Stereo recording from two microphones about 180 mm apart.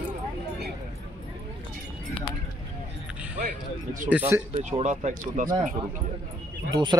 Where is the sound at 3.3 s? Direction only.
45° right (ahead or behind).